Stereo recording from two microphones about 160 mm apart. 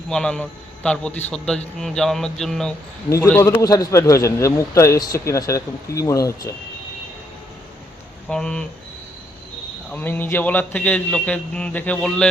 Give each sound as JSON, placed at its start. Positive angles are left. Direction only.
{"t": 0.1, "sound": "a man's voice", "side_deg": 5}
{"t": 3.1, "sound": "a man's voice", "side_deg": 15}
{"t": 8.3, "sound": "speech", "side_deg": 5}
{"t": 9.9, "sound": "a man's voice", "side_deg": 10}